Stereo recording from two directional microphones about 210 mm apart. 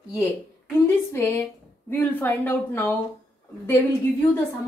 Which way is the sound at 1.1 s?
10° left (ahead or behind).